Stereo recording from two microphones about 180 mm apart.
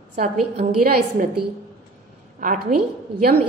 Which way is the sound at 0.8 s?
55° right (ahead or behind).